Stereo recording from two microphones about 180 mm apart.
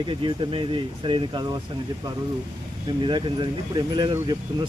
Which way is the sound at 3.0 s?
25° right (ahead or behind).